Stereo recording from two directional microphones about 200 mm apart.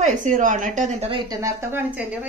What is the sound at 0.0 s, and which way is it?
A woman's voice, 40° right (ahead or behind).